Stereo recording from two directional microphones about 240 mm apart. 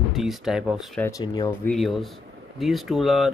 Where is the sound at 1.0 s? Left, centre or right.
Centre.